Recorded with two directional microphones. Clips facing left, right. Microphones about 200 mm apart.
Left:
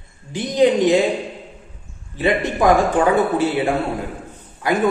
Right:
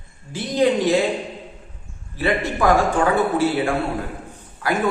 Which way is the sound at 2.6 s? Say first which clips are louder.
Left 2 dB; 20° left (ahead or behind).